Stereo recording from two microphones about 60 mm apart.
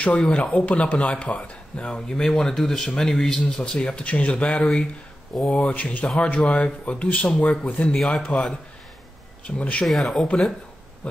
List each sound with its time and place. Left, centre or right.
0.0 s speech: left
8.0 s speech: centre
9.6 s speech: left
9.8 s speech: centre